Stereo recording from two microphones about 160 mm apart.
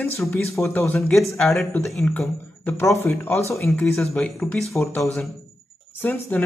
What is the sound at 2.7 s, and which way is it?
Speech, 15° left (ahead or behind).